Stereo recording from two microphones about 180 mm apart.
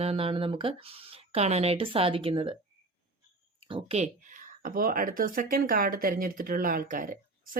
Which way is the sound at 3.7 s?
30° right (ahead or behind).